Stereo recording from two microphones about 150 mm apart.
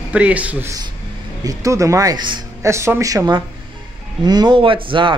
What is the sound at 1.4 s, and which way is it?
Speech, 20° right (ahead or behind).